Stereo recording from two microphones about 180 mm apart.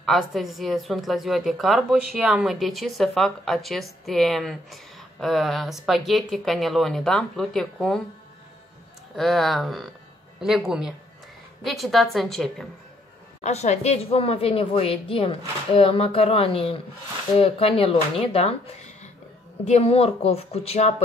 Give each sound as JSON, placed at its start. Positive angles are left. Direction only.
{"t": 0.0, "sound": "a woman's voice", "side_deg": 0}
{"t": 9.1, "sound": "a woman's voice", "side_deg": 0}
{"t": 13.4, "sound": "a woman's voice", "side_deg": 40}